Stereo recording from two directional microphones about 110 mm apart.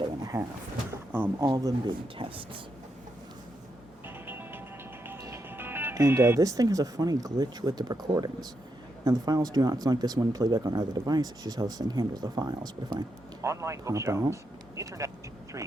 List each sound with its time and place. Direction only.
0.0 s a sound: 40° right (ahead or behind)
1.5 s speech: 35° right (ahead or behind)
4.3 s music: 20° right (ahead or behind)
5.0 s speech: 25° right (ahead or behind)
13.4 s speech: 25° right (ahead or behind)